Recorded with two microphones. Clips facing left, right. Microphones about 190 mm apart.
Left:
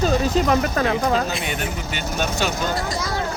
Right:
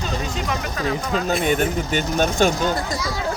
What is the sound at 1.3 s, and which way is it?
Speech, 50° right (ahead or behind).